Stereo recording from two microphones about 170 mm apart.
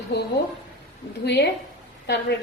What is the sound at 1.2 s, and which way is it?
Speech, 85° left.